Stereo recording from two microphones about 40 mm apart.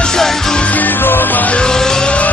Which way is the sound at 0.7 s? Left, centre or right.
Left.